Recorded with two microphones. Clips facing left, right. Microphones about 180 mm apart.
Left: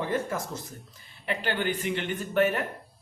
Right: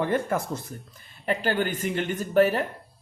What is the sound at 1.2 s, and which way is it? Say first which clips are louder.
Speech: right 3 dB; 40° right (ahead or behind).